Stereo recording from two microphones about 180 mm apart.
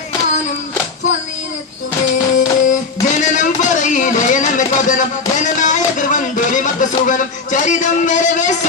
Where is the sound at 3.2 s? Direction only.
45° left (ahead or behind).